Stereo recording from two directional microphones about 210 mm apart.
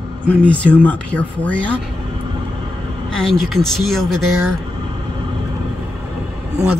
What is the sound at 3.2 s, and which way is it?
Speech, centre (ahead or behind).